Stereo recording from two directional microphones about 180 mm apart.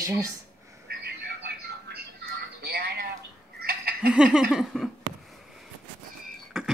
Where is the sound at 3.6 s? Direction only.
60° right (ahead or behind).